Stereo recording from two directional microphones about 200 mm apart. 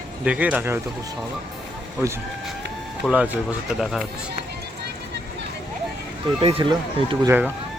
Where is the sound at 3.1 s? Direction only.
5° right (ahead or behind).